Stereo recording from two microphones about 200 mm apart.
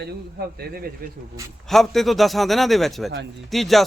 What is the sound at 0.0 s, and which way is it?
Speech, 50° right (ahead or behind).